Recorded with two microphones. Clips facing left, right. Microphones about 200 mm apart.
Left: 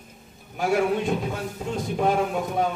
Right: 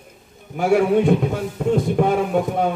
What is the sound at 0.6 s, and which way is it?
A man's voice, 60° right (ahead or behind).